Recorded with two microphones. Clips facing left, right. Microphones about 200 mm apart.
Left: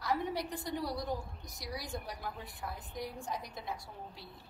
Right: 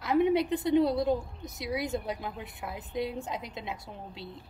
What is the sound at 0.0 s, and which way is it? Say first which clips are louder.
A woman's voice: right 10 dB; 20° right (ahead or behind).